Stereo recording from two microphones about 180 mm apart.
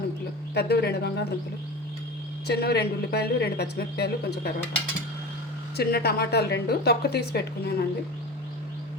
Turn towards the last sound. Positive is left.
turn(degrees=60)  # may be behind; listen again after turning